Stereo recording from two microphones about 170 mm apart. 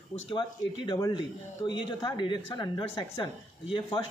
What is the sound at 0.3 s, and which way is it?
A woman's voice, 25° left (ahead or behind).